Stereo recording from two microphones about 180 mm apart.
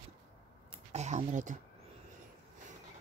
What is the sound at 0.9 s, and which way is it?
Speech, 40° right (ahead or behind).